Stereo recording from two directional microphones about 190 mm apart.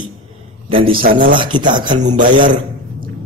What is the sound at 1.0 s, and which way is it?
Speech, 45° right (ahead or behind).